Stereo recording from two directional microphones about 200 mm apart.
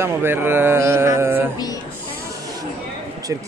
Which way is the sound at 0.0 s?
10° right (ahead or behind).